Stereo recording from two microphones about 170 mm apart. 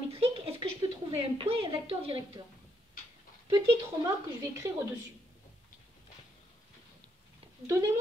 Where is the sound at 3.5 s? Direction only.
20° right (ahead or behind).